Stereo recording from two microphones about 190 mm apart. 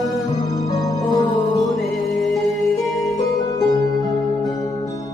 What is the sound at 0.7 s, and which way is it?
Music, 20° left (ahead or behind).